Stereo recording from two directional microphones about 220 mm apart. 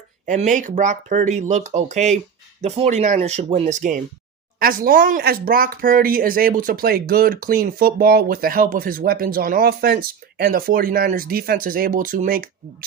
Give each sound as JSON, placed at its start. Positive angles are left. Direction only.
{"t": 0.3, "sound": "speech", "side_deg": -35}